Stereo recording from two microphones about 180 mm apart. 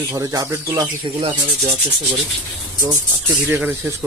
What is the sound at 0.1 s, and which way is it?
Speech, 20° right (ahead or behind).